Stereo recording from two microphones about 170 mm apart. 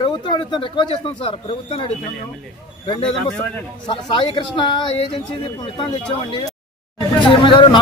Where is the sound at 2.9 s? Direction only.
30° left (ahead or behind).